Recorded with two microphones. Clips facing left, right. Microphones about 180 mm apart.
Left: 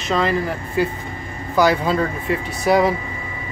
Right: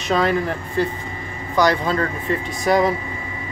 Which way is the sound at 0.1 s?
Centre (ahead or behind).